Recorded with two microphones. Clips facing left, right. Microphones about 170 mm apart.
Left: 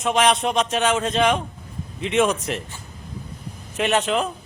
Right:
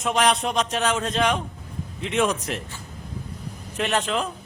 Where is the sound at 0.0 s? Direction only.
Centre (ahead or behind).